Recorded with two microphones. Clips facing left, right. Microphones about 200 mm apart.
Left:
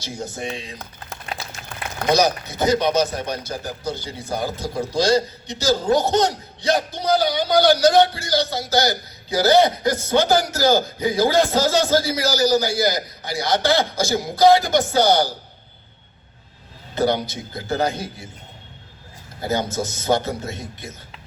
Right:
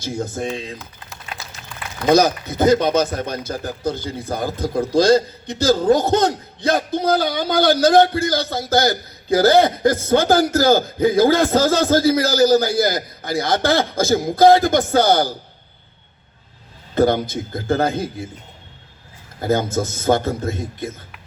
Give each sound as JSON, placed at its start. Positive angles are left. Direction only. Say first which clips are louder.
{"t": 0.0, "sound": "speech", "louder": "right 5 dB", "side_deg": -55}
{"t": 2.0, "sound": "speech", "louder": "right 4 dB", "side_deg": -50}
{"t": 16.9, "sound": "speech", "louder": "right 4 dB", "side_deg": -50}
{"t": 19.4, "sound": "speech", "louder": "right 4 dB", "side_deg": -50}